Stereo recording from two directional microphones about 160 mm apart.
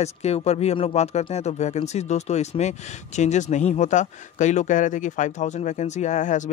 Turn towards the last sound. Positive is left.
turn(degrees=50)  # may be behind; listen again after turning